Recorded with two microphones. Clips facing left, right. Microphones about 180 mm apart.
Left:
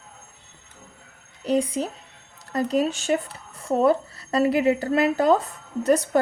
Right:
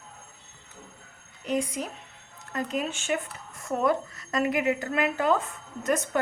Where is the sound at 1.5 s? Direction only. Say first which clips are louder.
Left 6 dB; 30° left (ahead or behind).